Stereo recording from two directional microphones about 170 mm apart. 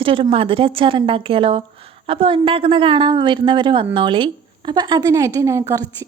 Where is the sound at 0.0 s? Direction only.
30° right (ahead or behind).